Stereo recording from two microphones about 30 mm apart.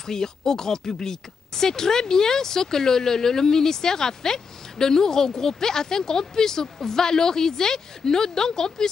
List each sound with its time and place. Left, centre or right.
0.0 s speech: centre